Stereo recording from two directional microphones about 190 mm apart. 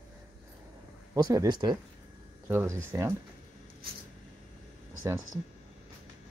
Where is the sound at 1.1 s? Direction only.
20° right (ahead or behind).